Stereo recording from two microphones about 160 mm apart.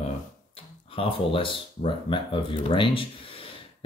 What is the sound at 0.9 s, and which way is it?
Speech, 35° left (ahead or behind).